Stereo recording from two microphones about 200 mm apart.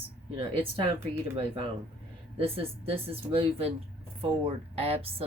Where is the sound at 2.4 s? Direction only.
30° right (ahead or behind).